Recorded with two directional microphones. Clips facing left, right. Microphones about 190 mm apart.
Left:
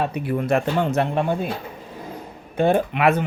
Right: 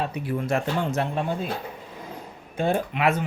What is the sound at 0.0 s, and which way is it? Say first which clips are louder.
Speech: left 4 dB; 60° left (ahead or behind).